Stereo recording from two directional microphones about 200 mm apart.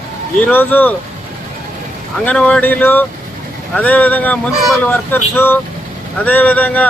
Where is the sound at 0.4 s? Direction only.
10° left (ahead or behind).